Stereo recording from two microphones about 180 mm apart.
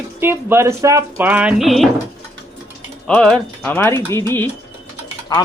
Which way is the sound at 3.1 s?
5° left (ahead or behind).